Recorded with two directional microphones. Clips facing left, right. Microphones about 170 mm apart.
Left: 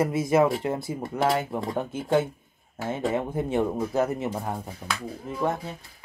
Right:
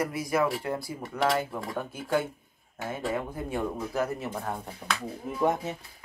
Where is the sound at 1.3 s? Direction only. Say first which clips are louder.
Left 3 dB; 25° left (ahead or behind).